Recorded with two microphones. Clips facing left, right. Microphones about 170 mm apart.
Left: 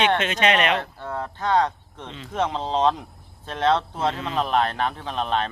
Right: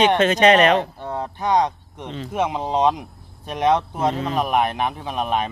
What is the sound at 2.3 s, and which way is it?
Speech, 10° right (ahead or behind).